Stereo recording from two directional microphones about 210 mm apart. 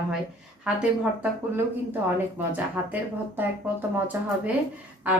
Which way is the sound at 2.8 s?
10° right (ahead or behind).